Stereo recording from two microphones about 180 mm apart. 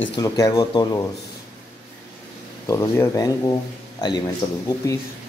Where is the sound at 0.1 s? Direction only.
20° left (ahead or behind).